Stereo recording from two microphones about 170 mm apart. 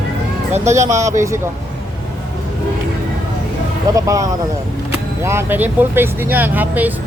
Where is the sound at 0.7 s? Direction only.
20° right (ahead or behind).